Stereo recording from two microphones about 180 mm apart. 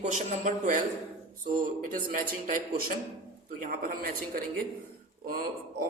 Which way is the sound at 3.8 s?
50° right (ahead or behind).